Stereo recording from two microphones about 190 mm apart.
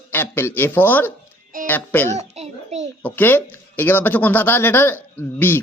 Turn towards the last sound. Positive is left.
turn(degrees=10)  # may be behind; listen again after turning